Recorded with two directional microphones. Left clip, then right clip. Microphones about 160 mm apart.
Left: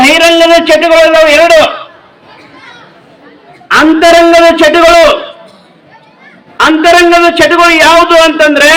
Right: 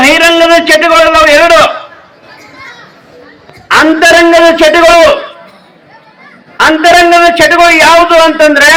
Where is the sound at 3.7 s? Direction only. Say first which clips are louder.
Even; 70° right (ahead or behind).